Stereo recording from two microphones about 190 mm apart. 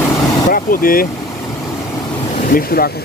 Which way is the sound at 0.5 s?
50° left (ahead or behind).